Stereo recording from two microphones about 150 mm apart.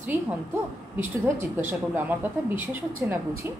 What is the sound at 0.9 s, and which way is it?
A woman's voice, 10° right (ahead or behind).